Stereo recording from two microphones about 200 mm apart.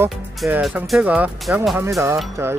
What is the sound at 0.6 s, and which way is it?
Speech, centre (ahead or behind).